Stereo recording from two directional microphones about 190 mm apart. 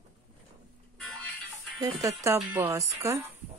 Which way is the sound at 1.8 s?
20° right (ahead or behind).